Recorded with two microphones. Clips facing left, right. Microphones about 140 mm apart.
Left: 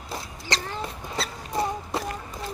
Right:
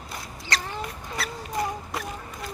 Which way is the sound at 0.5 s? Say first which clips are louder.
Left 1 dB; 25° left (ahead or behind).